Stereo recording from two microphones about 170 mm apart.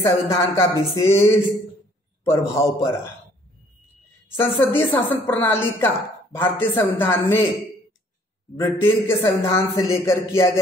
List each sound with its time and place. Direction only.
0.0 s a man's voice: 15° left (ahead or behind)
4.3 s a man's voice: 10° left (ahead or behind)
8.5 s a man's voice: 15° left (ahead or behind)